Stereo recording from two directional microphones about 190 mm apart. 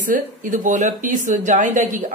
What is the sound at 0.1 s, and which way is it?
Speech, 45° right (ahead or behind).